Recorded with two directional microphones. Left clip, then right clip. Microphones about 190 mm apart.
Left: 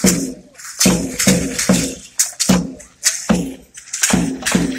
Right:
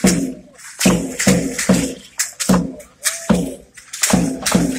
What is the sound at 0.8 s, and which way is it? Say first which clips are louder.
Music: left 1 dB; 15° left (ahead or behind).